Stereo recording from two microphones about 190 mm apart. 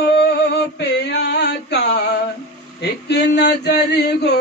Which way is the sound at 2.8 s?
60° left (ahead or behind).